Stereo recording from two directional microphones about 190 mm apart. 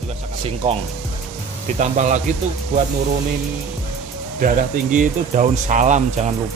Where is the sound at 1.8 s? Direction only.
40° right (ahead or behind).